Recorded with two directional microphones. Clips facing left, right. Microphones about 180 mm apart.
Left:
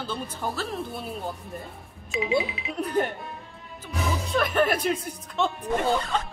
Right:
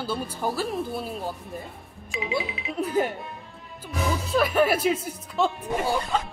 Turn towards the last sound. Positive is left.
turn(degrees=-5)  # may be behind; listen again after turning